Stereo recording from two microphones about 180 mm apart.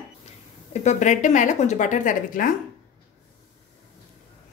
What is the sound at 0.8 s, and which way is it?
A woman's voice, 40° left (ahead or behind).